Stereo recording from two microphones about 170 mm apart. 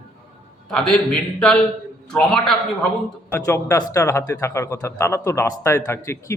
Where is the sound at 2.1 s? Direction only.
5° left (ahead or behind).